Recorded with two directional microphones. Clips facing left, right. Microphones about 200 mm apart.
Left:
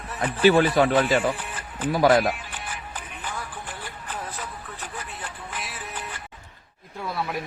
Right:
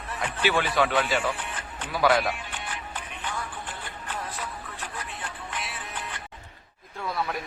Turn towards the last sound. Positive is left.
turn(degrees=5)  # may be behind; listen again after turning